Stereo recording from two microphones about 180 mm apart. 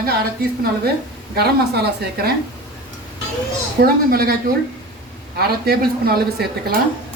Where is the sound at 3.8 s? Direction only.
55° right (ahead or behind).